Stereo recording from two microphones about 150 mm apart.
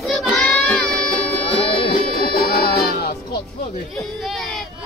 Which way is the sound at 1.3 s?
40° left (ahead or behind).